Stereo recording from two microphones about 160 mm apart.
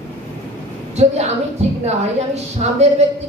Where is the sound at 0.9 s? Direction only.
45° right (ahead or behind).